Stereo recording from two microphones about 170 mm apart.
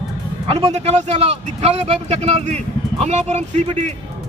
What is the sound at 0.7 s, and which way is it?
A man's voice, 40° right (ahead or behind).